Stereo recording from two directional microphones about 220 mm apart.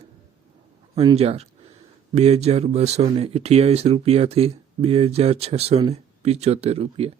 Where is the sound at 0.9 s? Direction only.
25° right (ahead or behind).